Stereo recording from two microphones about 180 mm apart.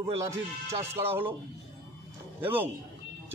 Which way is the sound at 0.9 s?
10° right (ahead or behind).